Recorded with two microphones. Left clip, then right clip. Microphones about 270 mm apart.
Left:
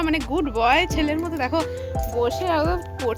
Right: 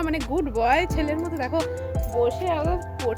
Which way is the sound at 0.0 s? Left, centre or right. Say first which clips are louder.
Left 3 dB; centre.